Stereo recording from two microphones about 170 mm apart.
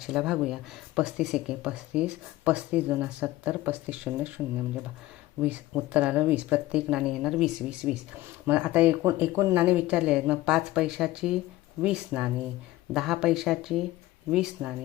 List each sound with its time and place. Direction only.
0.0 s speech: 5° right (ahead or behind)
5.4 s speech: 10° right (ahead or behind)